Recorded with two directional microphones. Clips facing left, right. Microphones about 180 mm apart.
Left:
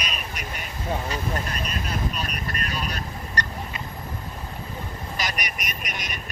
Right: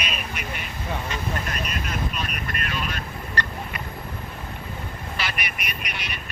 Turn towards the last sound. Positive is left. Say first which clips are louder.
# even
turn(degrees=45)  # may be behind; listen again after turning